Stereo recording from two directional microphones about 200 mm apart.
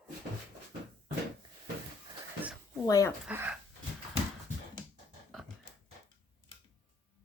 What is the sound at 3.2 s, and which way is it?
Speech, 5° right (ahead or behind).